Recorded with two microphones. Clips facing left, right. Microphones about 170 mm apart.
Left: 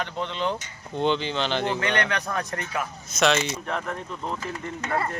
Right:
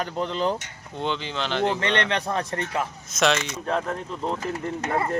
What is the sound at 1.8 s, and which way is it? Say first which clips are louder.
A man's voice: right 1 dB; 30° right (ahead or behind).